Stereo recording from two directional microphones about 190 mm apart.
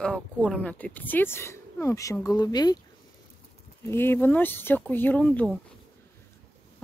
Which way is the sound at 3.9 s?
10° left (ahead or behind).